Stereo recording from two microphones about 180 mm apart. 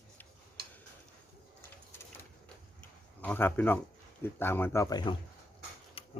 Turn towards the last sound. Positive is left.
turn(degrees=30)  # may be behind; listen again after turning